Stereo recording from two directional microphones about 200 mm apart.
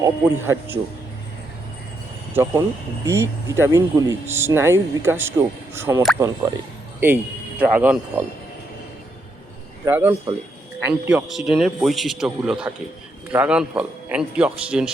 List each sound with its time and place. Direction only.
0.0 s speech: 15° right (ahead or behind)
2.3 s speech: 15° right (ahead or behind)
9.8 s speech: 10° right (ahead or behind)